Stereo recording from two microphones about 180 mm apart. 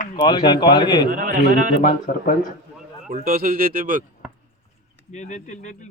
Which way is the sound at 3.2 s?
50° right (ahead or behind).